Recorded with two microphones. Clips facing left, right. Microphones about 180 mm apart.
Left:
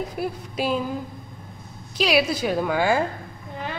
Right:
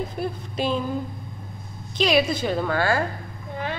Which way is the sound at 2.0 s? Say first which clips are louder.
Even; 10° left (ahead or behind).